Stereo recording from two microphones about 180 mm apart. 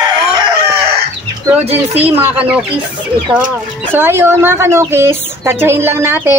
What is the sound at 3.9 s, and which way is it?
A woman's voice, 10° right (ahead or behind).